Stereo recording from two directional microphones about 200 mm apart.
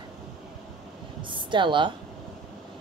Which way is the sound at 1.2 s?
25° right (ahead or behind).